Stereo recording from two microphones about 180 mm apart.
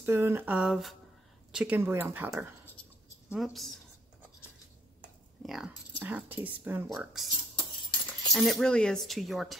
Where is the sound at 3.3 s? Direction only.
Centre (ahead or behind).